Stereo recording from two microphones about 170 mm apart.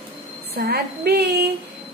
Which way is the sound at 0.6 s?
70° right (ahead or behind).